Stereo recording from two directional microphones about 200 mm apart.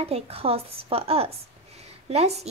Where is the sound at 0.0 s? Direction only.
30° right (ahead or behind).